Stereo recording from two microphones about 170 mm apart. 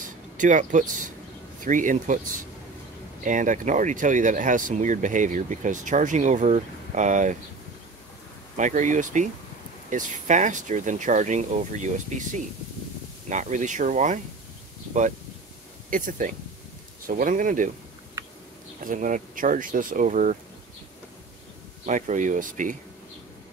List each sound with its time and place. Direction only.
0.4 s speech: 50° right (ahead or behind)
3.3 s speech: 50° right (ahead or behind)
8.5 s speech: 45° right (ahead or behind)
15.9 s speech: 50° right (ahead or behind)
18.8 s speech: 50° right (ahead or behind)
21.8 s speech: 45° right (ahead or behind)